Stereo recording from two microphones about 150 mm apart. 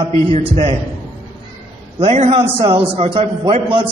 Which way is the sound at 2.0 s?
40° right (ahead or behind).